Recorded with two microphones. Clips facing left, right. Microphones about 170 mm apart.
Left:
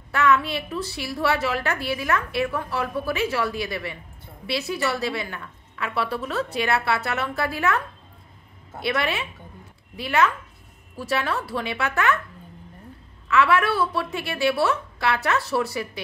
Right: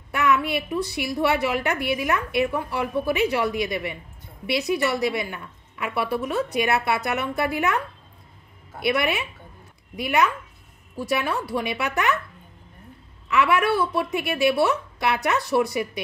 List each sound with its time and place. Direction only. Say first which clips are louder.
0.1 s a woman's voice: left 1 dB; 15° right (ahead or behind)
8.8 s a woman's voice: right 2 dB; 15° right (ahead or behind)
13.3 s a woman's voice: even; 15° right (ahead or behind)